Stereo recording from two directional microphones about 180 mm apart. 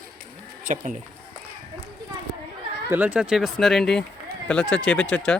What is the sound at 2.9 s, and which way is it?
Speech, 10° right (ahead or behind).